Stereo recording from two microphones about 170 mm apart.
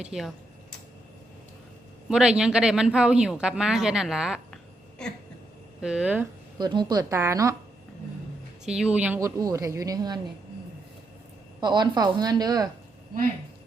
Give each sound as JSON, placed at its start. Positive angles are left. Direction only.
{"t": 0.0, "sound": "speech", "side_deg": 0}
{"t": 2.0, "sound": "speech", "side_deg": -5}
{"t": 6.6, "sound": "a woman's voice", "side_deg": -25}
{"t": 8.6, "sound": "a woman's voice", "side_deg": -5}
{"t": 9.4, "sound": "a woman's voice", "side_deg": -20}
{"t": 11.6, "sound": "a woman's voice", "side_deg": -25}